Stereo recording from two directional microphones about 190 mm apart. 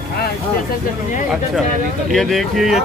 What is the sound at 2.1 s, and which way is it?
Speech, centre (ahead or behind).